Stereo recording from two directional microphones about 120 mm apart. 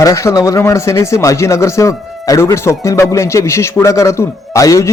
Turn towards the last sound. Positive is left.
turn(degrees=25)  # may be behind; listen again after turning